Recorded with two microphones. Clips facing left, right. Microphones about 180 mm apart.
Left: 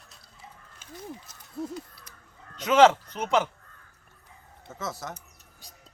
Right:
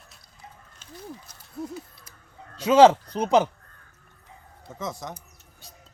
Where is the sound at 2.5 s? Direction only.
10° right (ahead or behind).